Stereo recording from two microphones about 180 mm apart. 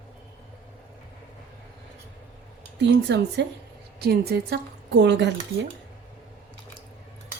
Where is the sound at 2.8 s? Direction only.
70° right (ahead or behind).